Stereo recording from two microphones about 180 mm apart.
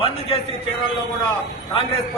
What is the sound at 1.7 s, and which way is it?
Speech, 30° left (ahead or behind).